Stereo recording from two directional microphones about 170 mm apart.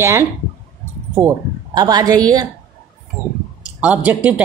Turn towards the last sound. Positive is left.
turn(degrees=-10)  # may be behind; listen again after turning